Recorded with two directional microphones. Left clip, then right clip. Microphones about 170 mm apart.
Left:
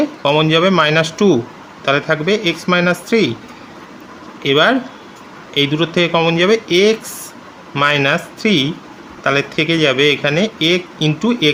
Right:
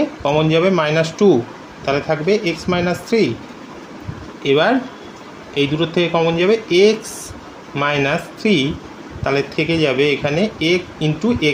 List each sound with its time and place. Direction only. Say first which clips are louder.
0.2 s speech: left 3 dB; 35° left (ahead or behind)
4.4 s speech: left 2 dB; 30° left (ahead or behind)